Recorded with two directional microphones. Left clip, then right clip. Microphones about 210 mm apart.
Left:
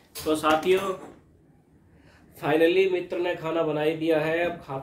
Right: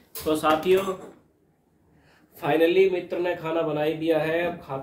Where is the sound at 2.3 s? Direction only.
Centre (ahead or behind).